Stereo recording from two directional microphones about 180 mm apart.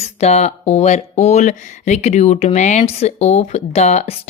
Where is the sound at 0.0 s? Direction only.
35° left (ahead or behind).